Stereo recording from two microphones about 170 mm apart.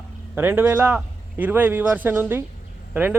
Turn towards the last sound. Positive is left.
turn(degrees=-10)  # may be behind; listen again after turning